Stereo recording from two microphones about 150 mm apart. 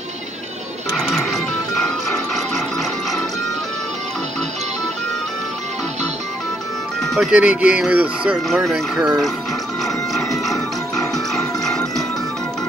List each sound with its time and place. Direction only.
1.1 s music: centre (ahead or behind)
7.0 s speech: centre (ahead or behind)
10.1 s music: centre (ahead or behind)